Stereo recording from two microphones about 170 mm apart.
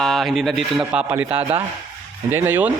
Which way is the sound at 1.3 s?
35° right (ahead or behind).